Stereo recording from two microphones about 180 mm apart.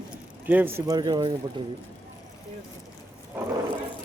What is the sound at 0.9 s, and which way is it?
Speech, 25° right (ahead or behind).